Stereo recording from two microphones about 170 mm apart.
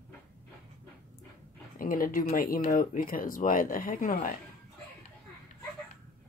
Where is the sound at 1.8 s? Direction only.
55° left (ahead or behind).